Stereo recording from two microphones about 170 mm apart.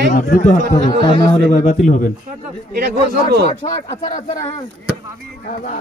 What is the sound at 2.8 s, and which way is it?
Speech, 75° right (ahead or behind).